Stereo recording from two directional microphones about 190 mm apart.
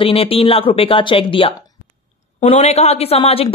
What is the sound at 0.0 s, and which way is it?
Speech, 30° left (ahead or behind).